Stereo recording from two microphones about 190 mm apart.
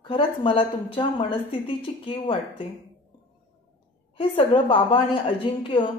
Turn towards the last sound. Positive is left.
turn(degrees=30)  # may be behind; listen again after turning